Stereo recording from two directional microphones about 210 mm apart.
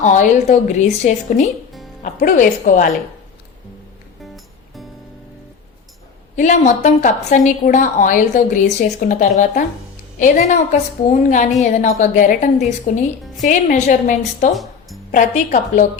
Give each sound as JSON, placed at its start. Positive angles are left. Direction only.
{"t": 0.0, "sound": "a woman's voice", "side_deg": 35}
{"t": 6.3, "sound": "a woman's voice", "side_deg": 35}
{"t": 14.5, "sound": "music", "side_deg": 0}
{"t": 15.1, "sound": "a woman's voice", "side_deg": 40}